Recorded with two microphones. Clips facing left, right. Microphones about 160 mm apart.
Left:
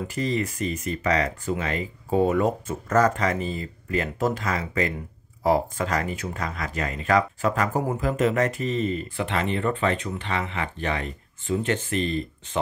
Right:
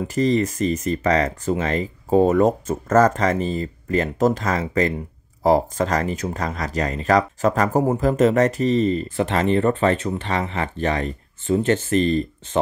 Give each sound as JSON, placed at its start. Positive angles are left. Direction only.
{"t": 0.1, "sound": "speech", "side_deg": -40}